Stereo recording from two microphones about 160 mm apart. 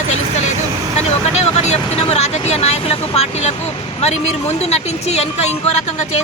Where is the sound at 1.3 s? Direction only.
40° left (ahead or behind).